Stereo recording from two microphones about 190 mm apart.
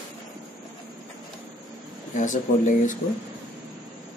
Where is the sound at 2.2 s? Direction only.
40° left (ahead or behind).